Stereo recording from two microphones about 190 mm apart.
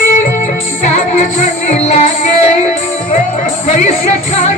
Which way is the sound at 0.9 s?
35° left (ahead or behind).